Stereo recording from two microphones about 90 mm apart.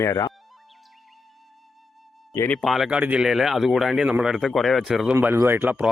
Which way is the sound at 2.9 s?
15° right (ahead or behind).